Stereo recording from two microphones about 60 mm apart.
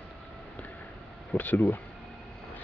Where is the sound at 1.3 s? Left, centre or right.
Left.